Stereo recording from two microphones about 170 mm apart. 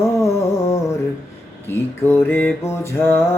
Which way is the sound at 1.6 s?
15° left (ahead or behind).